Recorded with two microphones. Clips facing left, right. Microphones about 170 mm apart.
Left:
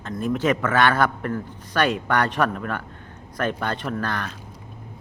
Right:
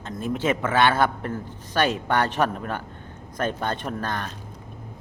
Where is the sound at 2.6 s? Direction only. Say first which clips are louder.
Left 1 dB; 35° right (ahead or behind).